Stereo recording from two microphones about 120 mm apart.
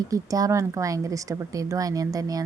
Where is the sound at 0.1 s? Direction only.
30° right (ahead or behind).